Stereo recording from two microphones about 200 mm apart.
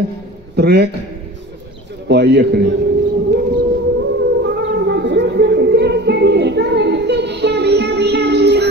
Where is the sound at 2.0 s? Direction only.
60° right (ahead or behind).